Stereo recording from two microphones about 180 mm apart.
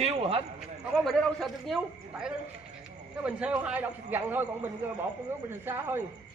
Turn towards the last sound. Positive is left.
turn(degrees=-10)  # may be behind; listen again after turning